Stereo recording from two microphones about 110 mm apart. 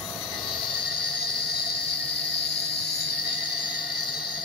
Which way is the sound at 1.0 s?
5° left (ahead or behind).